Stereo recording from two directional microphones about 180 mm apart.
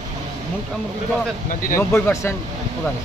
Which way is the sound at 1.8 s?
15° left (ahead or behind).